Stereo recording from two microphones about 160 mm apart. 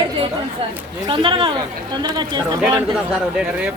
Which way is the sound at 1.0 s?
30° right (ahead or behind).